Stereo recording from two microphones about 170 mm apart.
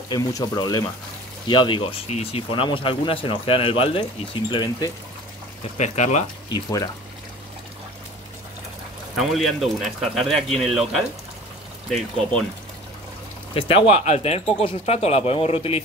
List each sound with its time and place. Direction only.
0.1 s speech: 20° left (ahead or behind)
5.8 s speech: 45° left (ahead or behind)
6.5 s speech: 20° left (ahead or behind)
9.2 s speech: centre (ahead or behind)
13.6 s speech: 35° left (ahead or behind)